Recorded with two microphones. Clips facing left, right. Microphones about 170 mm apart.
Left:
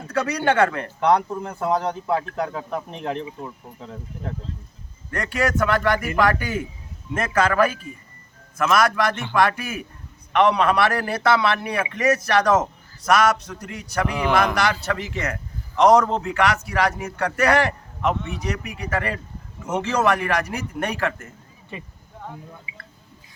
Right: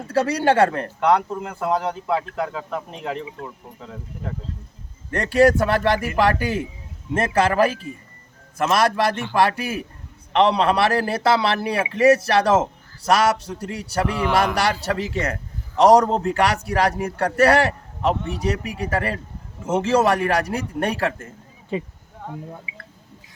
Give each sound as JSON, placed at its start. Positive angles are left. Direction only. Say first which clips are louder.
{"t": 0.1, "sound": "a man's voice", "louder": "right 3 dB", "side_deg": -30}
{"t": 0.9, "sound": "speech", "louder": "even", "side_deg": -5}
{"t": 5.1, "sound": "a man's voice", "louder": "right 7 dB", "side_deg": -30}